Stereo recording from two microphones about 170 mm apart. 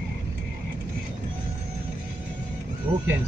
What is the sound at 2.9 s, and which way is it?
Speech, 35° right (ahead or behind).